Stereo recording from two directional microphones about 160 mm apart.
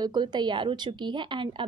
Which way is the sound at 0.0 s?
25° right (ahead or behind).